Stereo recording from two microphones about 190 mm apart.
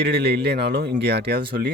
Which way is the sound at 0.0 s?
55° right (ahead or behind).